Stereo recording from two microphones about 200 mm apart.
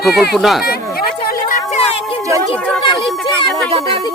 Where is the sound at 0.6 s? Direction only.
50° left (ahead or behind).